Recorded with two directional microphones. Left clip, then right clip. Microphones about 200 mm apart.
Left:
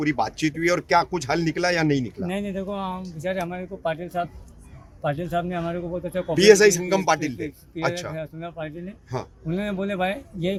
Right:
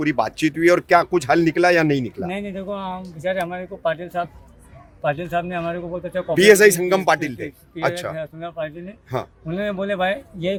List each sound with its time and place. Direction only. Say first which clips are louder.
0.0 s speech: right 3 dB; 60° right (ahead or behind)
2.2 s speech: right 1 dB; centre (ahead or behind)
6.3 s speech: right 3 dB; 60° right (ahead or behind)
8.1 s speech: right 4 dB; 5° right (ahead or behind)
9.1 s speech: right 5 dB; 60° right (ahead or behind)
9.5 s speech: right 4 dB; 5° right (ahead or behind)